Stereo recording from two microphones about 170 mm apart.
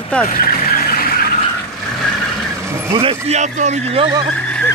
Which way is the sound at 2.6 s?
15° right (ahead or behind).